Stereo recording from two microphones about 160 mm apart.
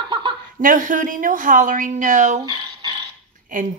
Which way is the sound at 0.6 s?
55° right (ahead or behind).